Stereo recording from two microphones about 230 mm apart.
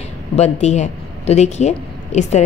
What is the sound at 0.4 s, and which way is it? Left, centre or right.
Speech, left.